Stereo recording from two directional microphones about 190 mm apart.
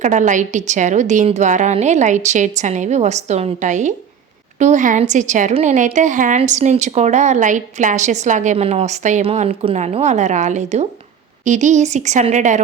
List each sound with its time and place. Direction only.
0.0 s a woman's voice: 40° right (ahead or behind)